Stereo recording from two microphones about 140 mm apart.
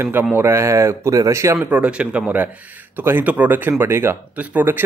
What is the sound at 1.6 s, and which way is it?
Speech, 10° right (ahead or behind).